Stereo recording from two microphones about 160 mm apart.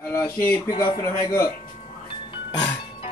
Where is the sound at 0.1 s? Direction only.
10° left (ahead or behind).